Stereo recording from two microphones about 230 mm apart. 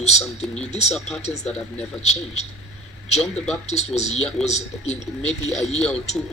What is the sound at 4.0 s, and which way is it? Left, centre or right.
Speech, left.